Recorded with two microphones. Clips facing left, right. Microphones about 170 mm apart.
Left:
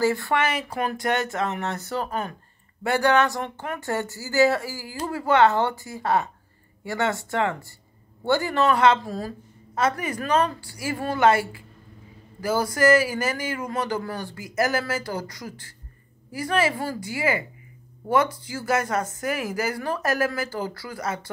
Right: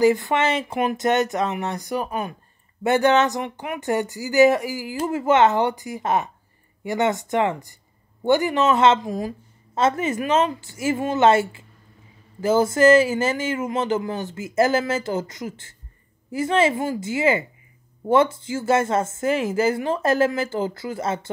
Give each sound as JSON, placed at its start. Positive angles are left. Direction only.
{"t": 0.0, "sound": "speech", "side_deg": -20}